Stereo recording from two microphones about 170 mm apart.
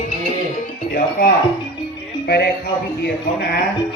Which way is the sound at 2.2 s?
70° left (ahead or behind).